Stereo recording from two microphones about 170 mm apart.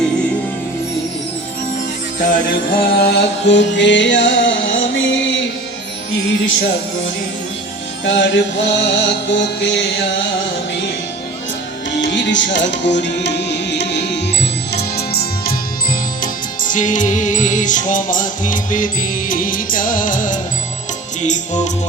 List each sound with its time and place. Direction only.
2.1 s music: 50° left (ahead or behind); by 5.5 s 90° left
8.0 s music: 90° left
12.0 s tabla: 90° left
14.7 s music: 70° left (ahead or behind); by 21.7 s 45° left (ahead or behind)